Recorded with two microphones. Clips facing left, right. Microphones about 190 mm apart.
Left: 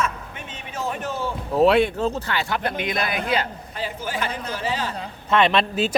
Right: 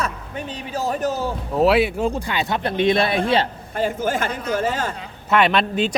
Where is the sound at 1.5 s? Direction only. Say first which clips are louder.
Even; centre (ahead or behind); by 3.5 s 30° right (ahead or behind).